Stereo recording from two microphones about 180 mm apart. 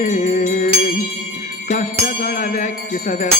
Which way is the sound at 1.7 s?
45° left (ahead or behind).